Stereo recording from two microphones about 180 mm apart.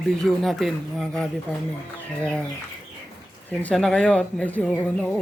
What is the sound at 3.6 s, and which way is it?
Speech, 5° left (ahead or behind).